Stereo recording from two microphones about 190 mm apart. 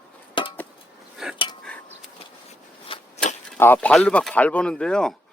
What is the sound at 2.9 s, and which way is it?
Shuffling cards, 35° left (ahead or behind).